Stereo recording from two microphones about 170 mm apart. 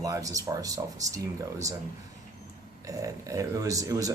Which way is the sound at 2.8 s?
20° right (ahead or behind).